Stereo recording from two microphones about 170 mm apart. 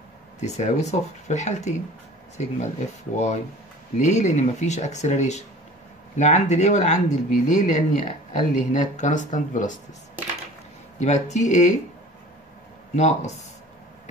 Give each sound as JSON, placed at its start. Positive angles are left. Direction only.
{"t": 0.4, "sound": "speech", "side_deg": 40}
{"t": 3.1, "sound": "speech", "side_deg": 45}
{"t": 11.0, "sound": "speech", "side_deg": 40}
{"t": 12.9, "sound": "speech", "side_deg": 40}